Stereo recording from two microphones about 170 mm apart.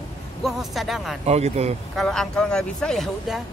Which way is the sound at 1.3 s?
40° right (ahead or behind).